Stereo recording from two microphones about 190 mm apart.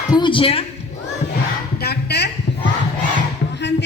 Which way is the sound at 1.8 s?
60° left (ahead or behind).